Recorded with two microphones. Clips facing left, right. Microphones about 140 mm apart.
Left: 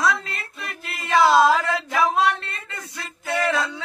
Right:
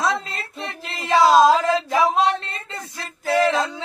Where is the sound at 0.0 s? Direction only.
20° right (ahead or behind).